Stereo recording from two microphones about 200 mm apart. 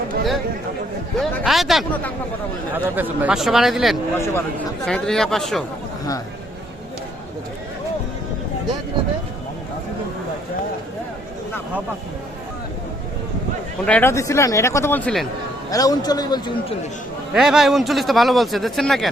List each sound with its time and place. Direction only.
1.2 s speech: centre (ahead or behind)
2.7 s speech: 10° right (ahead or behind)
4.1 s speech: 10° left (ahead or behind)
13.8 s speech: 10° left (ahead or behind)
15.7 s a man's voice: 20° left (ahead or behind)
17.3 s speech: centre (ahead or behind)